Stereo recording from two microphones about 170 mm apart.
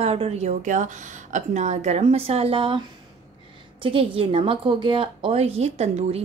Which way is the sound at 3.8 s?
30° right (ahead or behind).